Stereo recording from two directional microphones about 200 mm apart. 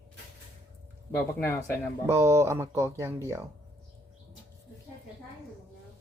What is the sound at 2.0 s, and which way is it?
Speech, 15° right (ahead or behind).